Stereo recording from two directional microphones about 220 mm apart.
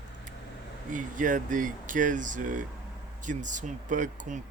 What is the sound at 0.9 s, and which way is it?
Speech, 35° right (ahead or behind).